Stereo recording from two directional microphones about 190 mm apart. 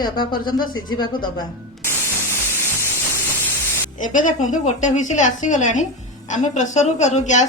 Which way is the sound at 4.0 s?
40° left (ahead or behind).